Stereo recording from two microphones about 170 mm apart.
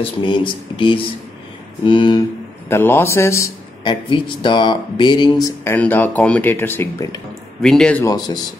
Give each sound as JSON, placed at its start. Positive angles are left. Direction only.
{"t": 0.0, "sound": "speech", "side_deg": 30}
{"t": 2.7, "sound": "speech", "side_deg": 15}
{"t": 4.1, "sound": "speech", "side_deg": 30}
{"t": 7.6, "sound": "speech", "side_deg": 5}